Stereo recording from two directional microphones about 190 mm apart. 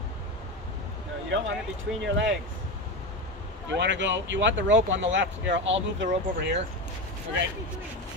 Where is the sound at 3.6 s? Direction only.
70° right (ahead or behind).